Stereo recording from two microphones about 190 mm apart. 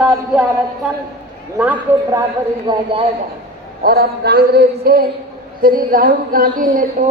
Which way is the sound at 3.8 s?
55° right (ahead or behind).